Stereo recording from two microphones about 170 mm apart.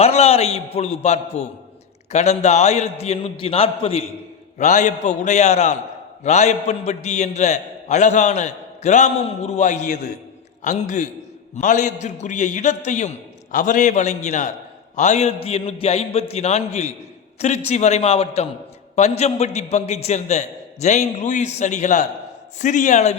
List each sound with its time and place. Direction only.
0.0 s a man's voice: 35° left (ahead or behind)